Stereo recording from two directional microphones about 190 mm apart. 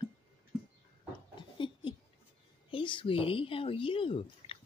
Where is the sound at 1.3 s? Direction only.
25° left (ahead or behind).